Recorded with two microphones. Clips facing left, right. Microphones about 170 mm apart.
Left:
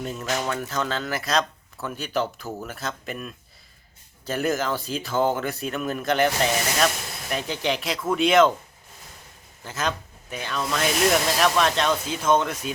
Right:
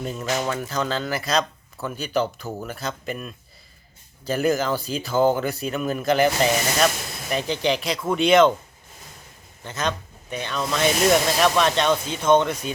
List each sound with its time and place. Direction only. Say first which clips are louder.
0.0 s speech: right 2 dB; centre (ahead or behind)
9.6 s speech: right 1 dB; 5° left (ahead or behind)